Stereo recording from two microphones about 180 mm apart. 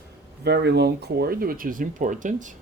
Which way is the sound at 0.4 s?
70° right (ahead or behind).